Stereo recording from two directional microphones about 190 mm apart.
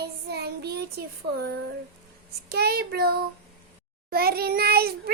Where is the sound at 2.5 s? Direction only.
55° right (ahead or behind).